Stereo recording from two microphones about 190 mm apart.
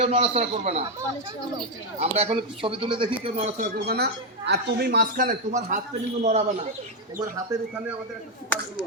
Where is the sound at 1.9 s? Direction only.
35° right (ahead or behind).